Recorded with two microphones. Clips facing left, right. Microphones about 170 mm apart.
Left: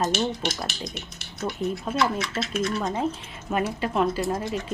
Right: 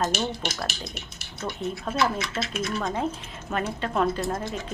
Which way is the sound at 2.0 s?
Centre (ahead or behind).